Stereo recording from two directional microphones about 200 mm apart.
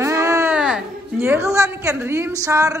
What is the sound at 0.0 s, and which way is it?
Speech, 15° right (ahead or behind).